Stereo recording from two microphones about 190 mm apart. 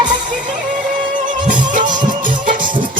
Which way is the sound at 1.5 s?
45° right (ahead or behind).